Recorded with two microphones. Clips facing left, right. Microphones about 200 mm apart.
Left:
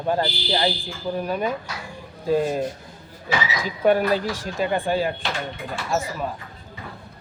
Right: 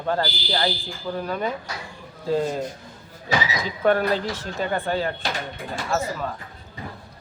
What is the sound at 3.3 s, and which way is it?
Speech, 40° right (ahead or behind).